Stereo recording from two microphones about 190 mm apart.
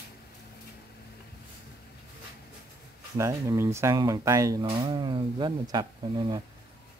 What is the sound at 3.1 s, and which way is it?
Speech, 15° right (ahead or behind).